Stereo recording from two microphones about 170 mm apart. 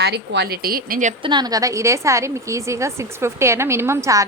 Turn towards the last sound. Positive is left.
turn(degrees=-20)  # may be behind; listen again after turning